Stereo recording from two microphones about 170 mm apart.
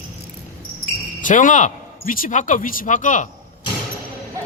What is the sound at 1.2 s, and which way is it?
A man's voice, 50° left (ahead or behind).